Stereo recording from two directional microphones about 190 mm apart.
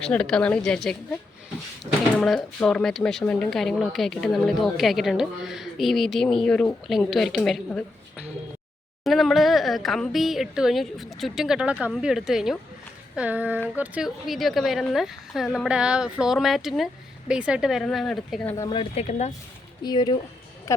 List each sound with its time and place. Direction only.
0.0 s speech: 5° left (ahead or behind)
18.5 s speech: 15° left (ahead or behind)
18.8 s speech: 35° left (ahead or behind)
19.8 s speech: 20° left (ahead or behind)